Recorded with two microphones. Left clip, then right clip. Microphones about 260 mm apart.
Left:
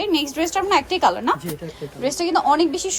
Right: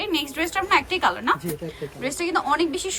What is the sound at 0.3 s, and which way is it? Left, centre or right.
Speech, centre.